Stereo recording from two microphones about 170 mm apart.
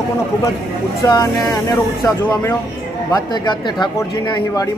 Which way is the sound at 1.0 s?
20° left (ahead or behind).